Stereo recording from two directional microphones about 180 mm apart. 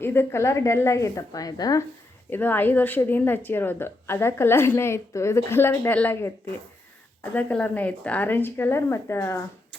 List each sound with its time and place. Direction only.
0.0 s speech: 15° left (ahead or behind)
2.3 s speech: 10° left (ahead or behind)
7.3 s speech: 10° left (ahead or behind)